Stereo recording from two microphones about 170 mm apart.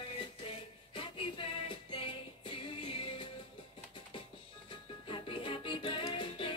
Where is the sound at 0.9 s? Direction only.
30° left (ahead or behind).